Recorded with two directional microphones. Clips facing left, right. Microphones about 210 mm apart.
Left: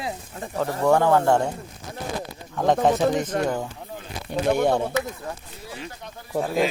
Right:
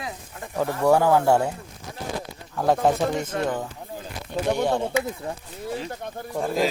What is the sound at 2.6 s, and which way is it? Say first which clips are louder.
Speech: left 1 dB; centre (ahead or behind).